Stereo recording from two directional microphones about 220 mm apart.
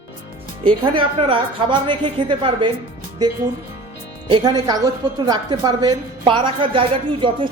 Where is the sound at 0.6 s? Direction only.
25° right (ahead or behind).